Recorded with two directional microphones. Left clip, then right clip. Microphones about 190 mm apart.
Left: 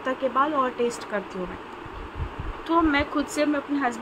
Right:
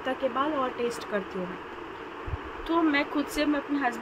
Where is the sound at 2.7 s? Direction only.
5° left (ahead or behind).